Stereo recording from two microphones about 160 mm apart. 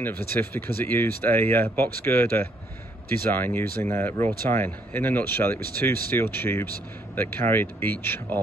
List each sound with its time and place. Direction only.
0.0 s speech: 15° left (ahead or behind)